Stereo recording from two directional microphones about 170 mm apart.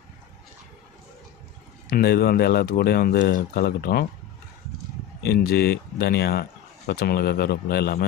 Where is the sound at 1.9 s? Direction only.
70° left (ahead or behind).